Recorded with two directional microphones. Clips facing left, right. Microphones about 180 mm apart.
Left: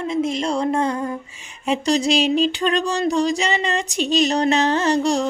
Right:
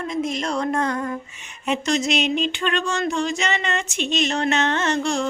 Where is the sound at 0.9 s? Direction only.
15° left (ahead or behind).